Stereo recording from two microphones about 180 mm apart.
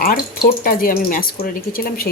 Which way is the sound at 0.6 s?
50° left (ahead or behind).